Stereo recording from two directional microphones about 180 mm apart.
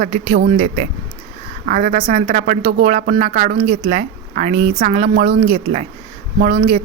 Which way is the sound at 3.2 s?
45° right (ahead or behind).